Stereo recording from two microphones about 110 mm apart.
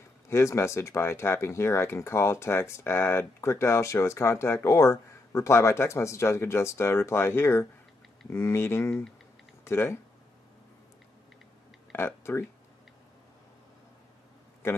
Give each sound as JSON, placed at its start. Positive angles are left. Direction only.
{"t": 0.3, "sound": "speech", "side_deg": 25}
{"t": 11.9, "sound": "speech", "side_deg": 20}